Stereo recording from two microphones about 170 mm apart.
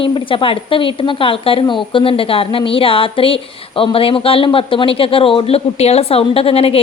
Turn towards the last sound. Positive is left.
turn(degrees=35)  # may be behind; listen again after turning